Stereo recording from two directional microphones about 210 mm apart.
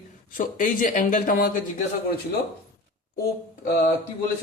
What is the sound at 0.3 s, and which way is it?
Speech, 40° left (ahead or behind).